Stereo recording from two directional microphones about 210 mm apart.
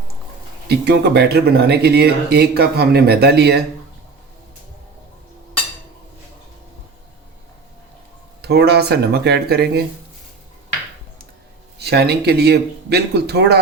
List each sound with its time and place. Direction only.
0.7 s speech: 50° right (ahead or behind)
8.4 s speech: 50° right (ahead or behind)
11.8 s speech: 50° right (ahead or behind)